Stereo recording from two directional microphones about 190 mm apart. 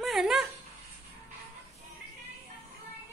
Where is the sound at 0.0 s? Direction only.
Centre (ahead or behind).